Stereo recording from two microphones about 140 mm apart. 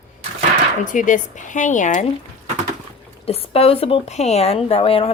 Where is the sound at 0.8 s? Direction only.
65° left (ahead or behind).